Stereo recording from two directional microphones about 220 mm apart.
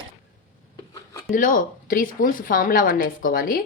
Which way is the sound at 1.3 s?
35° left (ahead or behind).